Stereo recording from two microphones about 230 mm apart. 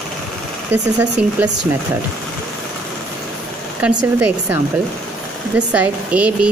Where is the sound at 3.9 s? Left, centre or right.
Centre.